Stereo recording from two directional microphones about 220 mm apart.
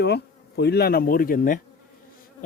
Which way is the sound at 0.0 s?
50° left (ahead or behind).